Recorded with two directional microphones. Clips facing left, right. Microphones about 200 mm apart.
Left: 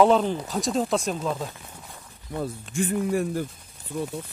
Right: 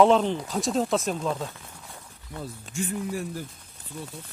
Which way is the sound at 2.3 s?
55° left (ahead or behind).